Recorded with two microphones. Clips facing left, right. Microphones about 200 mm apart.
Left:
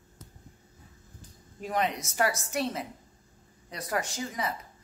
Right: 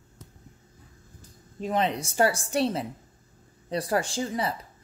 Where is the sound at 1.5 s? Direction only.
25° right (ahead or behind).